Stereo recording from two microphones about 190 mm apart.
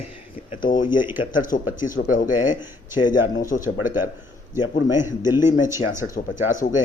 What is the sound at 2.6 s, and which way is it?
Speech, 25° left (ahead or behind).